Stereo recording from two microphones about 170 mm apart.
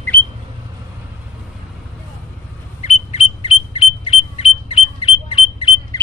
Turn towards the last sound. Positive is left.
turn(degrees=30)  # may be behind; listen again after turning